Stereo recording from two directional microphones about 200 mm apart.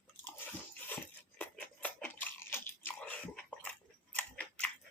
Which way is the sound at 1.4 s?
10° left (ahead or behind).